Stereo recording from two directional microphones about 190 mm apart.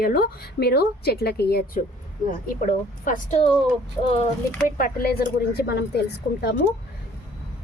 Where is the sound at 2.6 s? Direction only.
40° left (ahead or behind).